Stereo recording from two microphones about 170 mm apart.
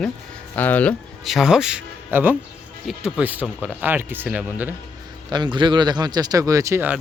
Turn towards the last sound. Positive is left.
turn(degrees=-15)  # may be behind; listen again after turning